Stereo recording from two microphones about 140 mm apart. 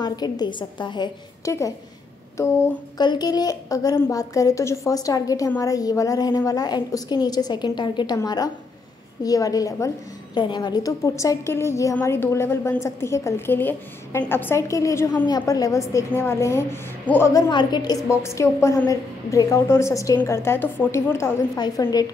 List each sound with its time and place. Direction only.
0.0 s a woman's voice: 30° left (ahead or behind)
2.3 s a woman's voice: 20° left (ahead or behind)
3.0 s a woman's voice: 30° left (ahead or behind); by 17.3 s 15° left (ahead or behind)
17.3 s a woman's voice: 30° left (ahead or behind)
21.5 s a woman's voice: 30° left (ahead or behind)